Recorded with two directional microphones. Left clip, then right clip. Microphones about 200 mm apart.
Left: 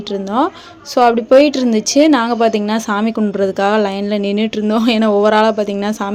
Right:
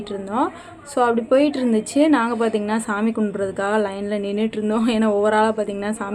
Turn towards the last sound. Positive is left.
turn(degrees=30)  # may be behind; listen again after turning